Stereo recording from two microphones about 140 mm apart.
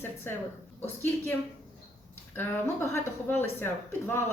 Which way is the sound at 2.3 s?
15° left (ahead or behind).